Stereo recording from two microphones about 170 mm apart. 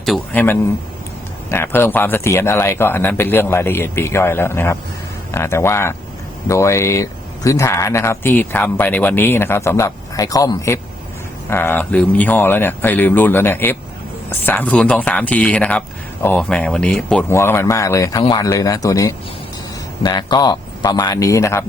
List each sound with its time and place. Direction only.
0.3 s a man's voice: 10° left (ahead or behind)